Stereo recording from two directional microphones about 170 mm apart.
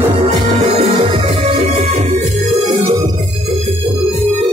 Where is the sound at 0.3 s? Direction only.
35° right (ahead or behind).